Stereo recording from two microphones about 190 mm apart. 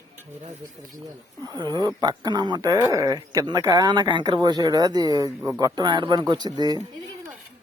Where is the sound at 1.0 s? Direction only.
20° right (ahead or behind).